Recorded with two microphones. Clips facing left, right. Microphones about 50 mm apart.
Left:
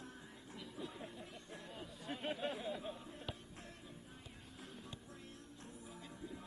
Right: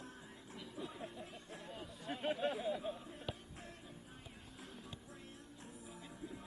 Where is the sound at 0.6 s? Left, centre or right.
Centre.